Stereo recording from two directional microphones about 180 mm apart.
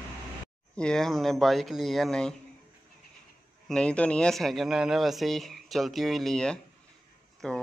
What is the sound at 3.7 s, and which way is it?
Speech, 5° left (ahead or behind).